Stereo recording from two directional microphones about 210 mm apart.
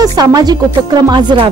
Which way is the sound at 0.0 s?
20° right (ahead or behind).